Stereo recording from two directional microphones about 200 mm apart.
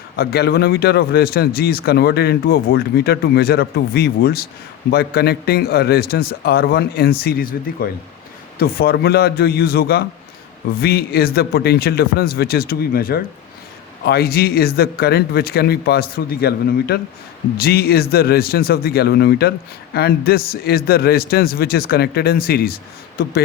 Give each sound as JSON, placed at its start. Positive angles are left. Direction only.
{"t": 0.2, "sound": "a man's voice", "side_deg": 50}